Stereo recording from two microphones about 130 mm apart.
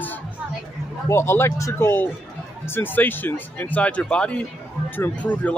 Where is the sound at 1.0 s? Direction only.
20° left (ahead or behind).